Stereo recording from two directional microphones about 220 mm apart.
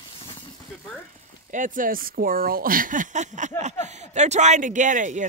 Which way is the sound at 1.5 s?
35° right (ahead or behind).